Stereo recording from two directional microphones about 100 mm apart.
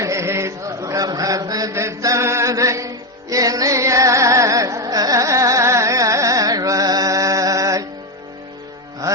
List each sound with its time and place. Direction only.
0.0 s chant: 30° right (ahead or behind)